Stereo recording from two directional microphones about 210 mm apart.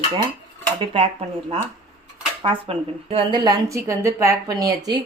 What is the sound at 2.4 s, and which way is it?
A woman's voice, 25° right (ahead or behind).